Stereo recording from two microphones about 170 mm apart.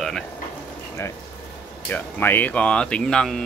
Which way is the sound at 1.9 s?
10° left (ahead or behind).